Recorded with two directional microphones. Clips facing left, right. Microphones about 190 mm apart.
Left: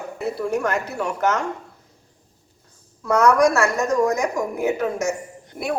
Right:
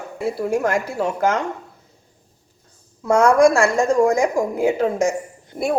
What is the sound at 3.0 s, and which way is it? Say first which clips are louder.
A woman's voice: right 3 dB; 25° right (ahead or behind).